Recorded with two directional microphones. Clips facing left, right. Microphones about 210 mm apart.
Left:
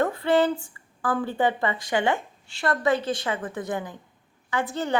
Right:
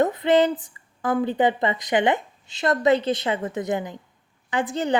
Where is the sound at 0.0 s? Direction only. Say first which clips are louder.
Right 3 dB; 20° right (ahead or behind).